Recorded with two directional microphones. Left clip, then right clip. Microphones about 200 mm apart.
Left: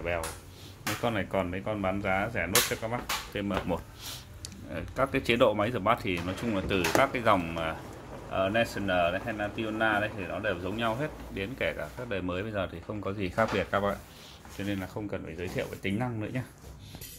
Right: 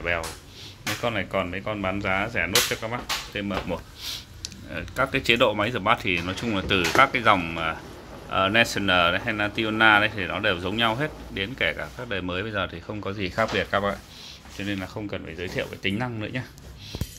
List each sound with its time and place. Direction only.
1.0 s speech: 15° left (ahead or behind)
3.3 s speech: 15° left (ahead or behind)
8.3 s speech: 10° right (ahead or behind)